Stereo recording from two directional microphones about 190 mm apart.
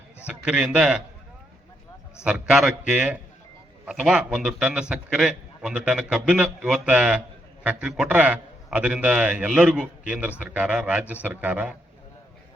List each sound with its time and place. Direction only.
0.4 s a man's voice: 5° right (ahead or behind)
2.2 s a man's voice: 5° right (ahead or behind)